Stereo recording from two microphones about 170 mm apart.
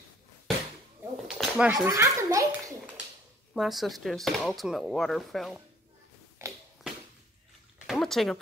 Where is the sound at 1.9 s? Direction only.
20° right (ahead or behind).